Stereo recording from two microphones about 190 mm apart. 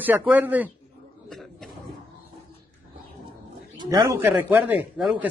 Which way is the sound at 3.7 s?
20° right (ahead or behind).